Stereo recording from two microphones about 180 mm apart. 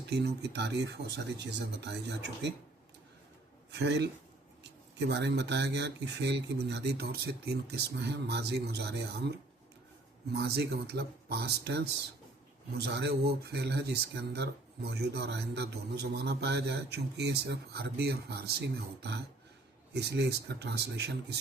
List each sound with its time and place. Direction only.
0.1 s speech: 65° right (ahead or behind)
3.7 s a man's voice: 70° right (ahead or behind)